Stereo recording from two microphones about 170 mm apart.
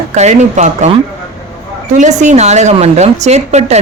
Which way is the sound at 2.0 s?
45° right (ahead or behind).